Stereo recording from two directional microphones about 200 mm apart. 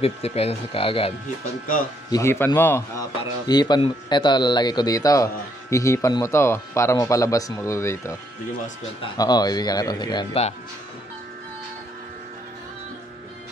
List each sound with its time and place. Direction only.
0.0 s a man's voice: 30° left (ahead or behind)
2.0 s a man's voice: 15° left (ahead or behind)